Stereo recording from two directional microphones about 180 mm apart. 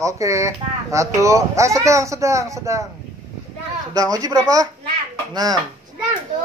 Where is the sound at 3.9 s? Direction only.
20° right (ahead or behind).